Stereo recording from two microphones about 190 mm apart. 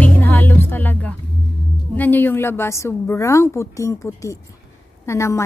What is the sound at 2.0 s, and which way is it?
A woman's voice, 10° left (ahead or behind).